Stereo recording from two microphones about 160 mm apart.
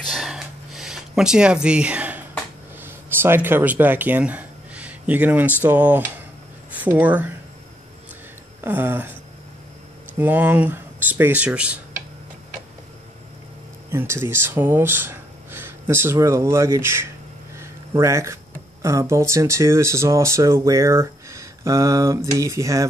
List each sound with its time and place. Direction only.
0.0 s a sound: centre (ahead or behind)
2.8 s speech: 15° right (ahead or behind)
8.5 s speech: 15° right (ahead or behind)
10.1 s speech: 10° right (ahead or behind)
13.8 s speech: 15° right (ahead or behind)